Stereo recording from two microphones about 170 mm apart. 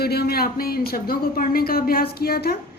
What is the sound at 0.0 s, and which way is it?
A woman's voice, 65° left (ahead or behind).